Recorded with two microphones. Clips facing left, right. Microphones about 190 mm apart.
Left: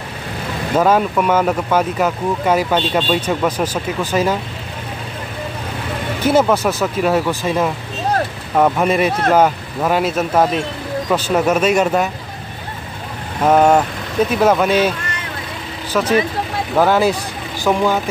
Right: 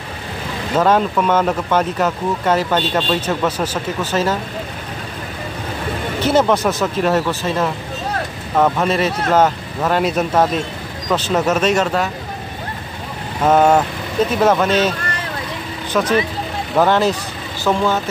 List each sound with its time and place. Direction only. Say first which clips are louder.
0.7 s speech: left 1 dB; 10° left (ahead or behind)
6.2 s speech: left 1 dB; 10° left (ahead or behind)
13.4 s speech: left 1 dB; 10° left (ahead or behind)